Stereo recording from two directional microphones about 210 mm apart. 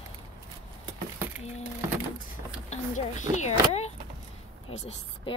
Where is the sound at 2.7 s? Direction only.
35° left (ahead or behind).